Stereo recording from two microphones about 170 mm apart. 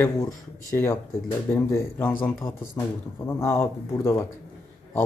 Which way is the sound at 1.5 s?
15° left (ahead or behind).